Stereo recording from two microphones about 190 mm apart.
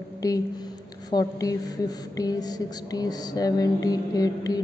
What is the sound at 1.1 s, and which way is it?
Music, 20° left (ahead or behind).